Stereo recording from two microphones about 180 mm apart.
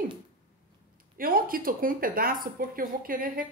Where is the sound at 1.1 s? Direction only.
55° right (ahead or behind).